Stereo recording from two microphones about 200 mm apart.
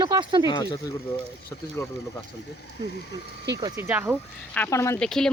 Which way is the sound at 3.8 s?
10° right (ahead or behind).